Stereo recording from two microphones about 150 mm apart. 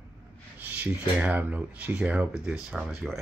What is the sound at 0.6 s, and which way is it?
Speech, 10° right (ahead or behind).